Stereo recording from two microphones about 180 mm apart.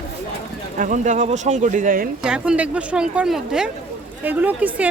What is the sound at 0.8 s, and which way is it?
Speech, 45° right (ahead or behind).